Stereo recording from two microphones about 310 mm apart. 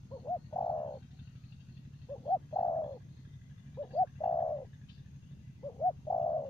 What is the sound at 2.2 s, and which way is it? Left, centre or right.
Bird, centre.